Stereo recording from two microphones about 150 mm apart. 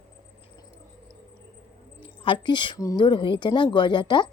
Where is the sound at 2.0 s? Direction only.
35° left (ahead or behind).